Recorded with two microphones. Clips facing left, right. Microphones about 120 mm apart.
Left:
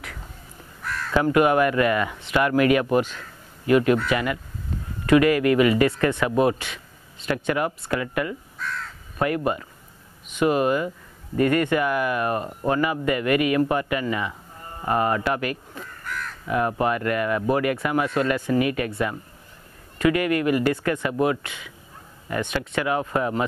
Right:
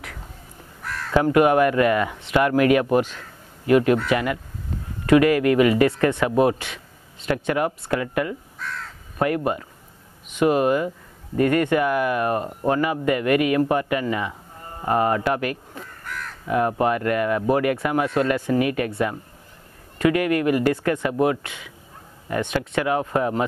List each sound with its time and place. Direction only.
0.8 s speech: 40° right (ahead or behind)